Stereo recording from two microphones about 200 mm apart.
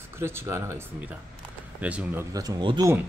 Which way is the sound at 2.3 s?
15° right (ahead or behind).